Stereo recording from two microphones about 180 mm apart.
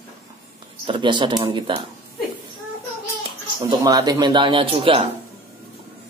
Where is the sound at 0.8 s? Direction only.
25° right (ahead or behind).